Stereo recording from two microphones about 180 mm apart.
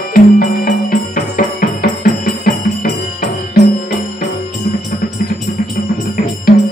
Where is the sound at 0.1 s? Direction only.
50° left (ahead or behind).